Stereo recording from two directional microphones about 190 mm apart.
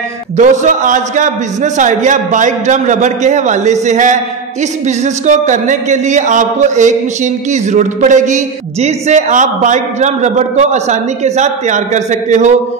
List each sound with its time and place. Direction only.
0.4 s a man's voice: 40° right (ahead or behind)